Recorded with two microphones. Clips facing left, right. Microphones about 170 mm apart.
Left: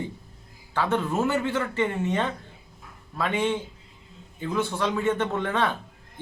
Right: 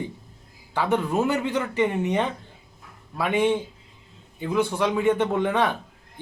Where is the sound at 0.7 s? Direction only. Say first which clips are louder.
Right 2 dB; 15° right (ahead or behind).